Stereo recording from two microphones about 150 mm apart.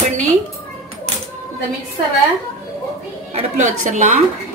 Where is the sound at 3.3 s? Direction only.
50° right (ahead or behind).